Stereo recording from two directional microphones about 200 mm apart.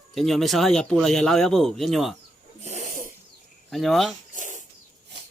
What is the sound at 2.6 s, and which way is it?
Snake, 35° right (ahead or behind).